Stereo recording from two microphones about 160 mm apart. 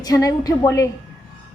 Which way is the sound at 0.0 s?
20° left (ahead or behind).